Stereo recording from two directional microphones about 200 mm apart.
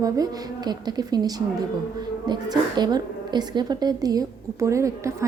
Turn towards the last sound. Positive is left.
turn(degrees=-15)  # may be behind; listen again after turning